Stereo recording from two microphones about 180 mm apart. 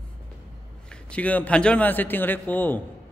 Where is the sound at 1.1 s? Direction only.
10° left (ahead or behind).